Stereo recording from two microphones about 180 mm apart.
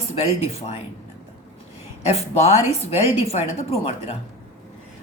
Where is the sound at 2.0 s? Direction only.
35° left (ahead or behind).